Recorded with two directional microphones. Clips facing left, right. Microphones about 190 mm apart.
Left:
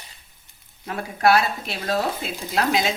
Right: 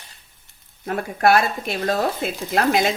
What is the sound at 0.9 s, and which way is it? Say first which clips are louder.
Speech: right 2 dB; 50° right (ahead or behind).